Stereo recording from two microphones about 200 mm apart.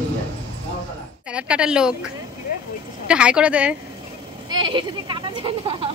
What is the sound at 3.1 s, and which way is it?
Speech, 5° right (ahead or behind).